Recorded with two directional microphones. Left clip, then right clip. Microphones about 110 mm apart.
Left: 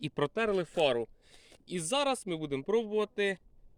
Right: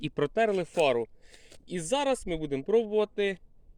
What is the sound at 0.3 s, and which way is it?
Speech, 15° left (ahead or behind).